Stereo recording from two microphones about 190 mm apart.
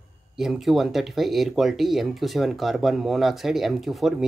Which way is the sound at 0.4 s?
Centre (ahead or behind).